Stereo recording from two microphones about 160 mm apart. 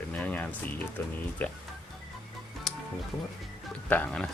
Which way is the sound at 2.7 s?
Centre (ahead or behind).